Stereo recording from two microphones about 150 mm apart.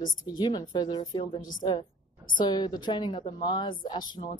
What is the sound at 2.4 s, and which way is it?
A woman's voice, 30° left (ahead or behind).